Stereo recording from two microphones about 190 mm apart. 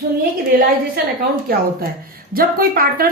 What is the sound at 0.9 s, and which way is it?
A woman's voice, 50° right (ahead or behind).